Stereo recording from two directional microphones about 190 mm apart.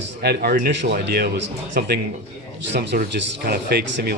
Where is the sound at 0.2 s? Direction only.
55° right (ahead or behind).